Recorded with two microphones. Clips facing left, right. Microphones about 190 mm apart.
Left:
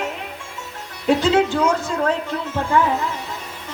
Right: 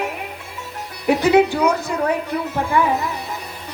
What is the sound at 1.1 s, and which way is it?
A woman's voice, 15° right (ahead or behind).